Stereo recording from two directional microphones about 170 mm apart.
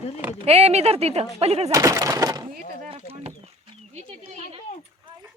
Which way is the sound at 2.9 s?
35° right (ahead or behind).